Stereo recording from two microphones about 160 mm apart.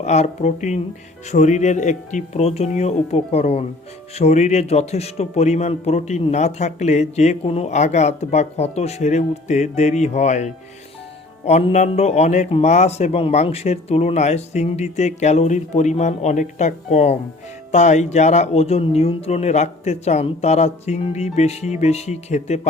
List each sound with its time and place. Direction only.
0.0 s a man's voice: 45° left (ahead or behind)